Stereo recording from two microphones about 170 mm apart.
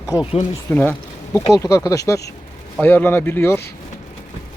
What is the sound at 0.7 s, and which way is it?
Speech, 10° left (ahead or behind).